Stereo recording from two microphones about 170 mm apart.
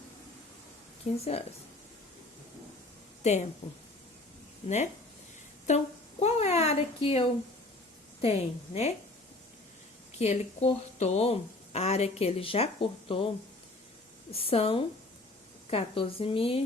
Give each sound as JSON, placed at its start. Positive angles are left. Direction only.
{"t": 1.2, "sound": "a woman's voice", "side_deg": 35}
{"t": 3.2, "sound": "a woman's voice", "side_deg": 40}
{"t": 5.6, "sound": "a woman's voice", "side_deg": 40}
{"t": 10.2, "sound": "a woman's voice", "side_deg": 40}